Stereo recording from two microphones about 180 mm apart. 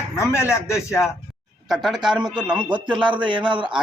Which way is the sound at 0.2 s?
15° left (ahead or behind).